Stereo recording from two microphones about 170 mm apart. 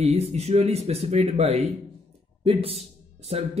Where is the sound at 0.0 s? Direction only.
35° right (ahead or behind).